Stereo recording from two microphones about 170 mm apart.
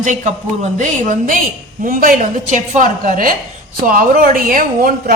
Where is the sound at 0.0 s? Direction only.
45° right (ahead or behind).